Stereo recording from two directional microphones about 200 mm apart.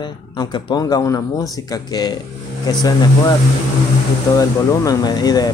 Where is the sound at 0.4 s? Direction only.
20° left (ahead or behind).